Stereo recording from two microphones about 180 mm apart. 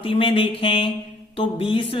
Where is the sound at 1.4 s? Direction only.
30° left (ahead or behind).